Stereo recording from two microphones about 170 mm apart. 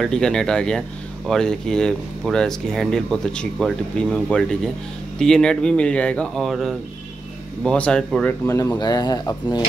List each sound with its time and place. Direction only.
0.0 s speech: 5° left (ahead or behind); by 9.6 s 25° left (ahead or behind)